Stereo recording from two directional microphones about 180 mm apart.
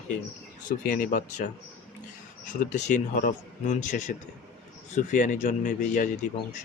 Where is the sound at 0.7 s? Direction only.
45° left (ahead or behind).